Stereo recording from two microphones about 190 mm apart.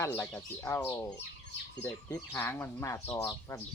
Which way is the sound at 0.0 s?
10° left (ahead or behind).